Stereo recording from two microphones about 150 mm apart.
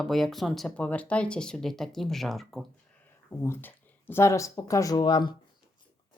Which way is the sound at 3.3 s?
15° left (ahead or behind).